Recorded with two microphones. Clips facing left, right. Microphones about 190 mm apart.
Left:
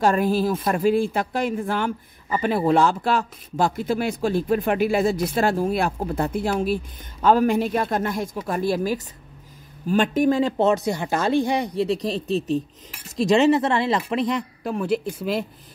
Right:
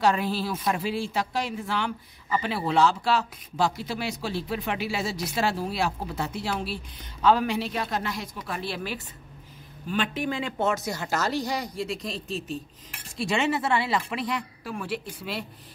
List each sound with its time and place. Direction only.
0.0 s speech: 50° left (ahead or behind)
10.9 s speech: 20° left (ahead or behind); by 15.4 s 45° left (ahead or behind)